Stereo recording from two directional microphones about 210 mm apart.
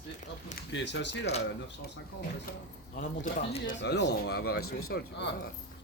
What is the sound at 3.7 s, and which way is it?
Speech, 55° left (ahead or behind).